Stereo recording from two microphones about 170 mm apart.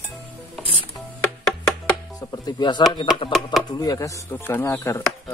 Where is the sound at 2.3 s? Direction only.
25° left (ahead or behind).